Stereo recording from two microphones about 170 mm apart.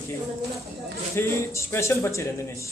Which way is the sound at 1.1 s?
15° left (ahead or behind).